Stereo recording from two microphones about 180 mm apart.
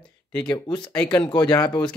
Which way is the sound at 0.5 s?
20° left (ahead or behind).